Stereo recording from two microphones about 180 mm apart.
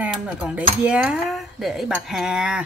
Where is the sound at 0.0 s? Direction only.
5° right (ahead or behind).